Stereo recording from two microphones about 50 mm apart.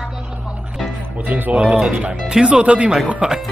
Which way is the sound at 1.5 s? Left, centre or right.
Centre.